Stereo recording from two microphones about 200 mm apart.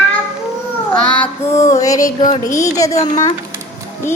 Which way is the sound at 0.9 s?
5° left (ahead or behind).